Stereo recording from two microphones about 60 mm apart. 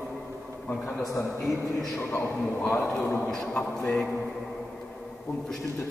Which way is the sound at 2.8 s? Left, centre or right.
Centre.